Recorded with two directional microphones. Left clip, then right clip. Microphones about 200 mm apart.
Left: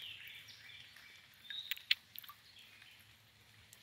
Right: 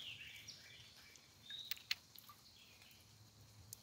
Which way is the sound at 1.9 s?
25° right (ahead or behind).